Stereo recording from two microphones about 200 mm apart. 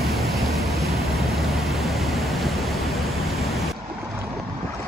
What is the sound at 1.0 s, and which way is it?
Vehicle, centre (ahead or behind).